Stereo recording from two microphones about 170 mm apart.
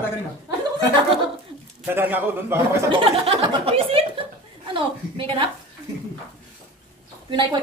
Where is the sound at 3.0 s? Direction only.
35° right (ahead or behind).